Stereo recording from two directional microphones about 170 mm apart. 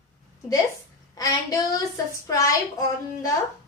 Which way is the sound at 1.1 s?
20° left (ahead or behind).